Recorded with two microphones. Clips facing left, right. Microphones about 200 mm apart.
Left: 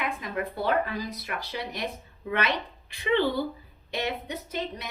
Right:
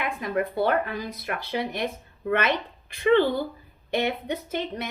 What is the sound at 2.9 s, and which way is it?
Speech, 50° right (ahead or behind).